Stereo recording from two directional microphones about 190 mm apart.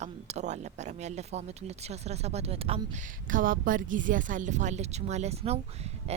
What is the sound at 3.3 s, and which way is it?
Speech, 45° right (ahead or behind).